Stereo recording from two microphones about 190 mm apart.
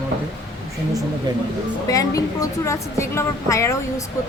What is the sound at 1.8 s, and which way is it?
A woman's voice, 20° left (ahead or behind).